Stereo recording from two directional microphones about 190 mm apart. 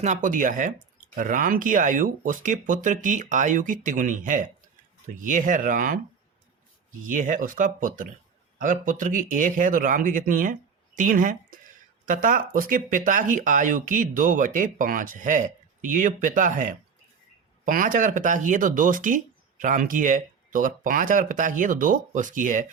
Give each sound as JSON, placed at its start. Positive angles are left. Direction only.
{"t": 0.0, "sound": "speech", "side_deg": -40}
{"t": 7.0, "sound": "speech", "side_deg": -45}